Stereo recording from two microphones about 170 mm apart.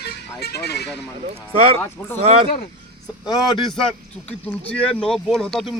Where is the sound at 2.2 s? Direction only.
40° right (ahead or behind).